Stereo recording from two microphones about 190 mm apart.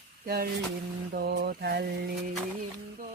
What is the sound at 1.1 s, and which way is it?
Mantra, 60° right (ahead or behind).